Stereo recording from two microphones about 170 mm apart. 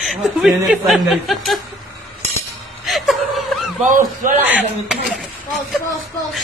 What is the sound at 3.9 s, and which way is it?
Speech, 50° right (ahead or behind).